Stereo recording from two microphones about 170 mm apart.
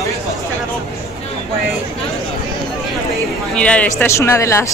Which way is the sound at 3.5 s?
5° left (ahead or behind).